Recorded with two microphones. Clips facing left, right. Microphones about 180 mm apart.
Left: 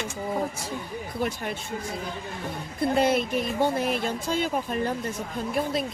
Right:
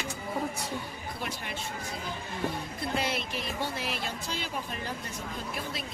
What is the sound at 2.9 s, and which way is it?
Speech, 50° left (ahead or behind).